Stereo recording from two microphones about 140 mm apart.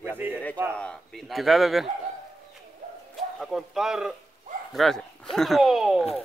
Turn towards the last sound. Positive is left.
turn(degrees=0)  # may be behind; listen again after turning